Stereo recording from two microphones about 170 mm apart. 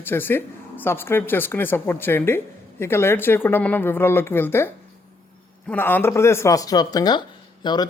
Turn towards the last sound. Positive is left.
turn(degrees=25)  # may be behind; listen again after turning